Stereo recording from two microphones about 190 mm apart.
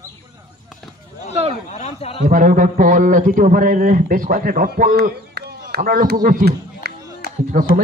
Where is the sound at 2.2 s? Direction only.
45° right (ahead or behind).